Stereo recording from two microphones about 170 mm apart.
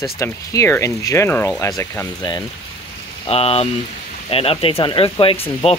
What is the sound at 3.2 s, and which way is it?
Speech, 35° left (ahead or behind).